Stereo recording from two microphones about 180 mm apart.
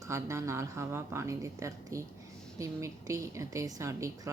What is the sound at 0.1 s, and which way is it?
A woman's voice, 15° right (ahead or behind).